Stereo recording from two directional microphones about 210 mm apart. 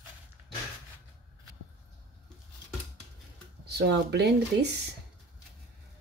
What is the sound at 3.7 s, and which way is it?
Speech, 55° right (ahead or behind).